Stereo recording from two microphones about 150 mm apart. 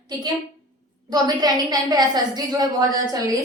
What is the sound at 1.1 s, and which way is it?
A woman's voice, 25° right (ahead or behind).